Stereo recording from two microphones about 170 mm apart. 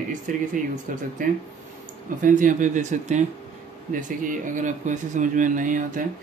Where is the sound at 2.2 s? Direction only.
50° right (ahead or behind).